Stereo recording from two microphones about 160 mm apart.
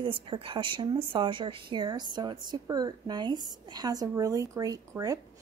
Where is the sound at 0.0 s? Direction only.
35° right (ahead or behind).